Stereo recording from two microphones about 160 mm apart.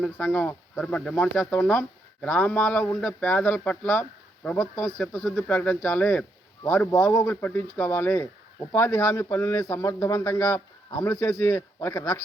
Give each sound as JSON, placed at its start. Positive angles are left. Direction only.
{"t": 0.0, "sound": "speech", "side_deg": 5}